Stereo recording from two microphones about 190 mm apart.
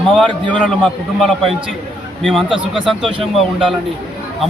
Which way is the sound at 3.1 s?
25° right (ahead or behind).